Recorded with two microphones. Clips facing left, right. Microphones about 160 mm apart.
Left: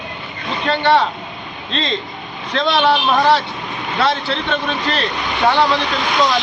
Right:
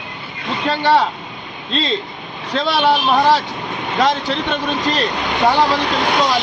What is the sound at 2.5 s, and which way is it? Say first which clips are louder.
Speech: even; 10° right (ahead or behind).